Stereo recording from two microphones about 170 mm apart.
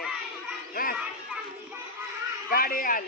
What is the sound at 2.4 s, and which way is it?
Speech, 60° left (ahead or behind).